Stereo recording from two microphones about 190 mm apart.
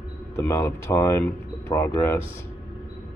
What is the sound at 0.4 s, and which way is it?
Speech, 15° left (ahead or behind).